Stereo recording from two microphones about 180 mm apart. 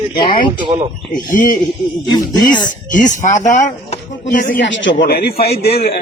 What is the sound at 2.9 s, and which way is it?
Speech, 45° left (ahead or behind).